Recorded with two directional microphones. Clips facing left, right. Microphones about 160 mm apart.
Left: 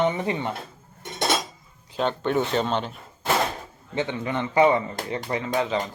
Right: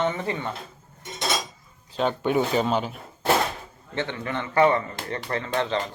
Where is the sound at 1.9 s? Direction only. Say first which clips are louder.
Right 1 dB; 10° right (ahead or behind).